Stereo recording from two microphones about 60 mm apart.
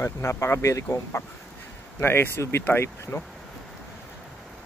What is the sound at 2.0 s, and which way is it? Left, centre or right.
Speech, left.